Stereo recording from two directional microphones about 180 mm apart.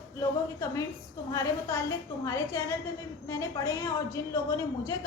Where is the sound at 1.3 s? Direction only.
20° left (ahead or behind).